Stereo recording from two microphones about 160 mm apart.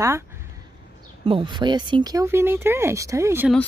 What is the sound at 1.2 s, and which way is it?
Speech, 35° right (ahead or behind).